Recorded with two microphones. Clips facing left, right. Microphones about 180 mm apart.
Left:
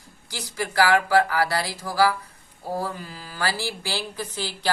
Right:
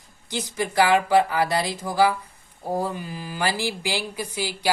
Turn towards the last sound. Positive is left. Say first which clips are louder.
# right 2 dB
turn(degrees=-10)  # may be behind; listen again after turning